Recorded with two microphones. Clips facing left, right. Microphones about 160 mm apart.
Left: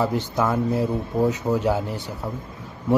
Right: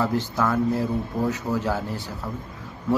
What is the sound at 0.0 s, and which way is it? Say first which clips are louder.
A man's voice: left 1 dB; 20° left (ahead or behind).